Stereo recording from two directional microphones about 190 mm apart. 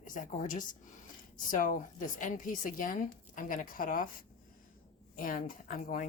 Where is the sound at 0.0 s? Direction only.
45° left (ahead or behind).